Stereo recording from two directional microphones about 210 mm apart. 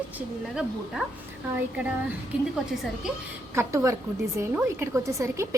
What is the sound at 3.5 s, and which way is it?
A woman's voice, 15° right (ahead or behind).